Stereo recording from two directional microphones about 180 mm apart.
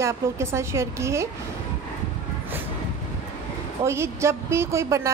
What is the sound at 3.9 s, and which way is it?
A woman's voice, 15° right (ahead or behind).